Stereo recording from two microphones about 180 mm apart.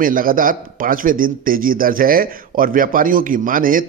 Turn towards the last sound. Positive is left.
turn(degrees=-50)  # may be behind; listen again after turning